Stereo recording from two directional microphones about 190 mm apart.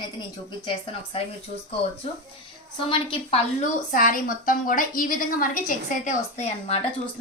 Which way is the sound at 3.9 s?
45° left (ahead or behind).